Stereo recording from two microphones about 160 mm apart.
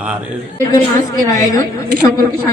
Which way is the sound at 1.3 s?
20° left (ahead or behind).